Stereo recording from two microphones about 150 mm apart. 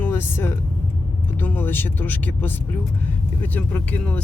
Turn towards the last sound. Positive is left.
turn(degrees=10)  # may be behind; listen again after turning